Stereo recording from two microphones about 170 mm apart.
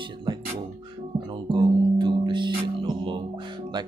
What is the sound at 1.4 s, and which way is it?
Music, 25° right (ahead or behind).